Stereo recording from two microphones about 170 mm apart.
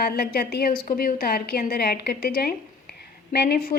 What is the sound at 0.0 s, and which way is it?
A woman's voice, 65° left (ahead or behind).